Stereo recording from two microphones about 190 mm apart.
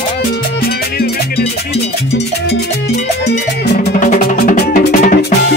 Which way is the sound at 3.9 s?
40° left (ahead or behind).